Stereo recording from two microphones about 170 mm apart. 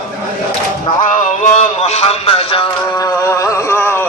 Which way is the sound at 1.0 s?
45° left (ahead or behind).